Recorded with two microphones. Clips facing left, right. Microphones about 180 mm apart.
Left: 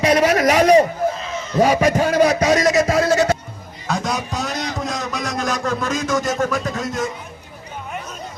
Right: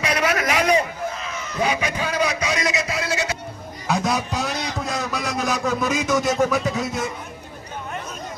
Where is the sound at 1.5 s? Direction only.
45° left (ahead or behind).